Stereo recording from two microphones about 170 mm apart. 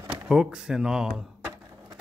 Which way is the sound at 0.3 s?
5° right (ahead or behind).